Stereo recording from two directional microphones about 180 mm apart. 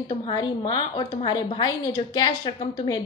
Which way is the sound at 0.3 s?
25° left (ahead or behind).